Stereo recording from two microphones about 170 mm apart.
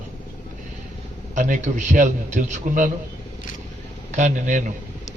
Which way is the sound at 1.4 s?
50° right (ahead or behind).